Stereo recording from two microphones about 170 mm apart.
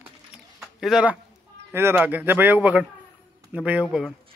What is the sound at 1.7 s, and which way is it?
A man's voice, 15° right (ahead or behind).